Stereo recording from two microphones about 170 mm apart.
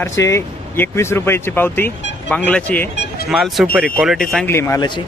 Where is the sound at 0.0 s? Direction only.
15° left (ahead or behind).